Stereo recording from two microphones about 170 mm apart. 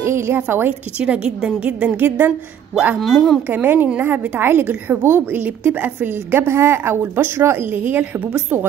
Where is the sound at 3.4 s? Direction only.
10° right (ahead or behind).